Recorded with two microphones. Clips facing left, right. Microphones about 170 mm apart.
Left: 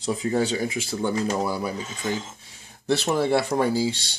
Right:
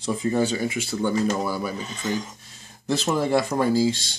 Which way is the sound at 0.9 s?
15° left (ahead or behind).